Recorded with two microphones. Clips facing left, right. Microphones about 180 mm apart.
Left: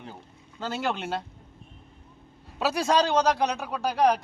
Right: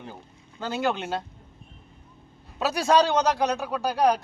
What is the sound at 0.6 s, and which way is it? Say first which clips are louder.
Speech: right 3 dB; centre (ahead or behind).